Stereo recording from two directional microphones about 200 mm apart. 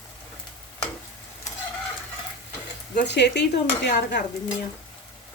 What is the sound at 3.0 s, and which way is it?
Speech, 60° left (ahead or behind).